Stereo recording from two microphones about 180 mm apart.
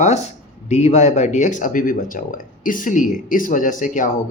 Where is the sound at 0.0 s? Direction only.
40° left (ahead or behind).